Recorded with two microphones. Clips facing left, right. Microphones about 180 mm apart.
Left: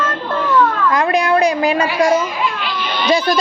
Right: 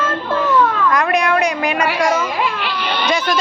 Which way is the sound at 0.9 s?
30° left (ahead or behind).